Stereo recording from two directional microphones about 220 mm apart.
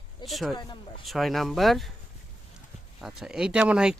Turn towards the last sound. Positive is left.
turn(degrees=-5)  # may be behind; listen again after turning